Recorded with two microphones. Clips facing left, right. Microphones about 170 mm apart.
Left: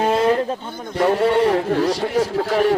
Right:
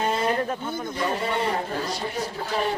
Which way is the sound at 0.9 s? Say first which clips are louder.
Left 12 dB; 75° left (ahead or behind).